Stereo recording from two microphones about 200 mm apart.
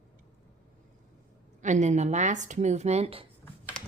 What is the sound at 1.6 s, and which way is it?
Speech, 35° right (ahead or behind).